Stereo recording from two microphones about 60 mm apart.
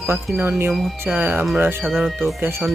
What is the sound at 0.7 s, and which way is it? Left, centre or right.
Speech, centre.